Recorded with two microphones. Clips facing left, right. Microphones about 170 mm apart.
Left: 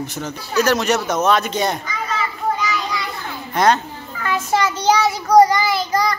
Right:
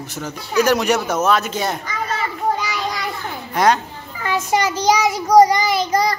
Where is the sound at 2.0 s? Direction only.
50° right (ahead or behind).